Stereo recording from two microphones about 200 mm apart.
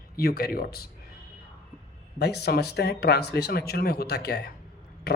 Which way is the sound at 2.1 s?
55° left (ahead or behind).